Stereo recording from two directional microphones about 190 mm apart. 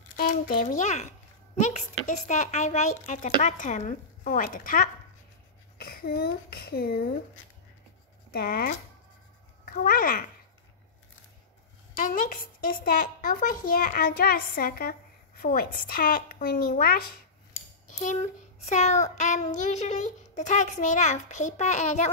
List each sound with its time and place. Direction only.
0.1 s speech: 45° left (ahead or behind)
8.3 s speech: 50° left (ahead or behind)
11.9 s speech: 45° left (ahead or behind)
17.9 s a child's voice: 40° left (ahead or behind)